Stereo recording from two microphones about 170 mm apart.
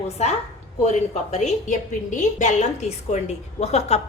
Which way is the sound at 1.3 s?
40° left (ahead or behind).